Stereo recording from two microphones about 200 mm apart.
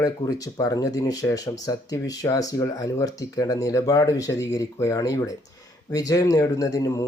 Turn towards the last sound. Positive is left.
turn(degrees=15)  # may be behind; listen again after turning